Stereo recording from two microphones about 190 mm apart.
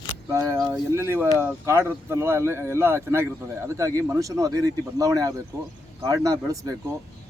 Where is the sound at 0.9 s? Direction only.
15° right (ahead or behind).